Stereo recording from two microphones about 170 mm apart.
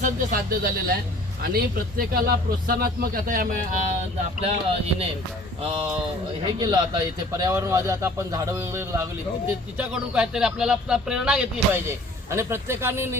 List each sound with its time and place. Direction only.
0.0 s speech: 55° right (ahead or behind)
4.4 s speech: 35° right (ahead or behind)
6.6 s speech: 25° right (ahead or behind)
9.7 s speech: 5° right (ahead or behind)